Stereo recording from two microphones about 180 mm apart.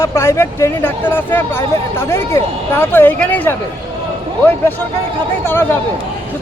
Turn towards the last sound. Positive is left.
turn(degrees=10)  # may be behind; listen again after turning